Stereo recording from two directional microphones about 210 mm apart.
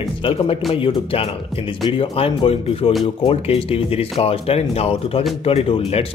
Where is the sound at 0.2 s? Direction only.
25° left (ahead or behind).